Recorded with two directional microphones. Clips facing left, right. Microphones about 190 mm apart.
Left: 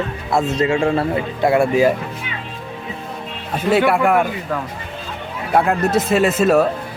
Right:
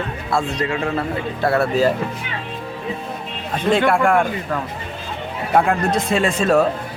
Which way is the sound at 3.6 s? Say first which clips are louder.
Left 1 dB; 5° left (ahead or behind).